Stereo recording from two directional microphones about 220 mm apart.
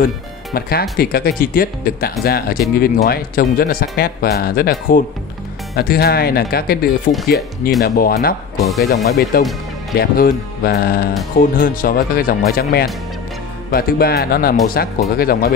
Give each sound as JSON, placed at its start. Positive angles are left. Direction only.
{"t": 0.0, "sound": "speech", "side_deg": 45}